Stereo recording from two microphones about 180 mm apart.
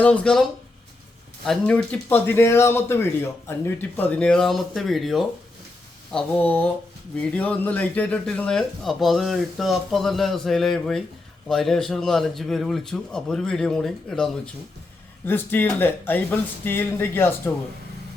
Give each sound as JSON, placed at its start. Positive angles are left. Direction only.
{"t": 0.0, "sound": "a man's voice", "side_deg": 5}
{"t": 1.5, "sound": "a man's voice", "side_deg": 5}